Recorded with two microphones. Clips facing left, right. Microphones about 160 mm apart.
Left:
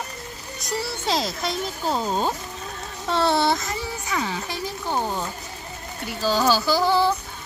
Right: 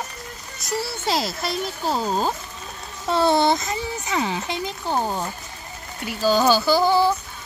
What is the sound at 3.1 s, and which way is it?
Speech, 15° right (ahead or behind).